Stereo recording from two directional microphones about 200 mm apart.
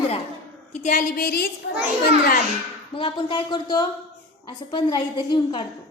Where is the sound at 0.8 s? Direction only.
40° left (ahead or behind).